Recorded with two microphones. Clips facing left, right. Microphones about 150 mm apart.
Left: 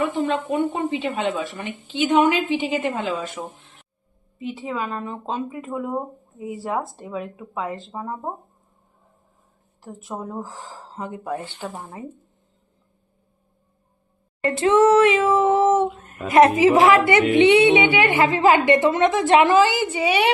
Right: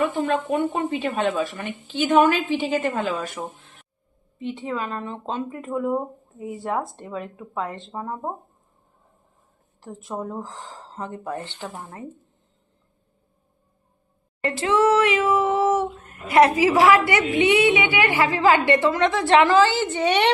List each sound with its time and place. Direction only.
0.5 s a woman's voice: 20° left (ahead or behind)
4.4 s speech: 5° left (ahead or behind)
9.8 s speech: centre (ahead or behind)
14.6 s a woman's voice: 25° left (ahead or behind); by 20.3 s 5° left (ahead or behind)